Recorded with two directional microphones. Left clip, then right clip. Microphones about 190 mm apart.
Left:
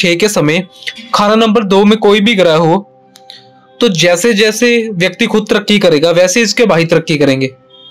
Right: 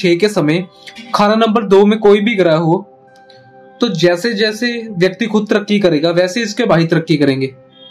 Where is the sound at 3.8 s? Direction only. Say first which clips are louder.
Left 4 dB; 35° left (ahead or behind).